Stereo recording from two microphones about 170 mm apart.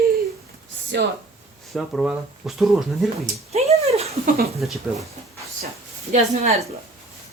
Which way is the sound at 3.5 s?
40° right (ahead or behind).